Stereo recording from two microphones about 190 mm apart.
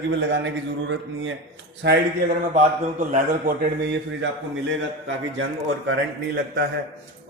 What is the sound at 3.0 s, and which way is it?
Speech, 40° right (ahead or behind).